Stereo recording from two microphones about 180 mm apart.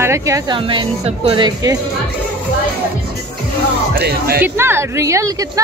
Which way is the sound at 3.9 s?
60° right (ahead or behind).